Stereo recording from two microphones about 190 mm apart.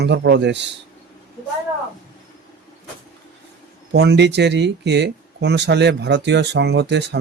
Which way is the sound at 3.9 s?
65° right (ahead or behind).